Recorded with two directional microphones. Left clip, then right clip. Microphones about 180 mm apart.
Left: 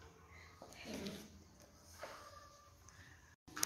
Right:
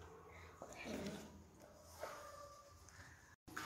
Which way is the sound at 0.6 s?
5° right (ahead or behind).